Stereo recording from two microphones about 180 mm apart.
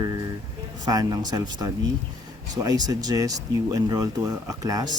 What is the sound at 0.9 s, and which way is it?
Speech, 20° right (ahead or behind).